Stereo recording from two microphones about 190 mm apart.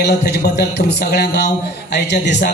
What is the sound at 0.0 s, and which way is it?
A man's voice, 60° left (ahead or behind).